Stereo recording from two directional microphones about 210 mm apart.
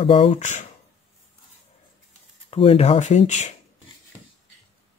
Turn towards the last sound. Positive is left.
turn(degrees=35)  # may be behind; listen again after turning